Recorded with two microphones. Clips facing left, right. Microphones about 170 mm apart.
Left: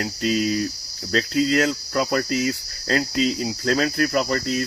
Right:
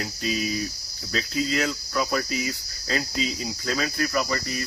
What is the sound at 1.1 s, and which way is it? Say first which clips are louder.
Cricket: left 6 dB; 45° left (ahead or behind).